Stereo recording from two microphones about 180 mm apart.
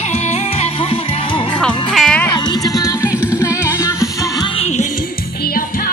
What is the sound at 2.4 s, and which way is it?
Music, 20° left (ahead or behind).